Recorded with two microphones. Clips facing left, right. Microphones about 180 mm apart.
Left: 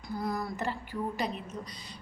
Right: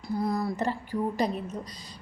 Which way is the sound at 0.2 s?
25° right (ahead or behind).